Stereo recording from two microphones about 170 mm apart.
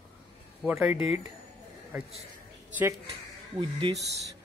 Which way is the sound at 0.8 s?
15° right (ahead or behind).